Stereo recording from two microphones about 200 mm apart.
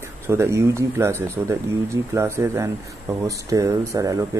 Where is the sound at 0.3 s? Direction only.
15° right (ahead or behind).